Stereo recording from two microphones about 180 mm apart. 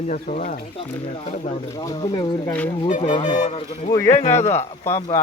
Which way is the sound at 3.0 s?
35° left (ahead or behind).